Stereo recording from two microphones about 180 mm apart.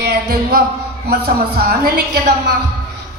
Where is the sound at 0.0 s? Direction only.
60° right (ahead or behind).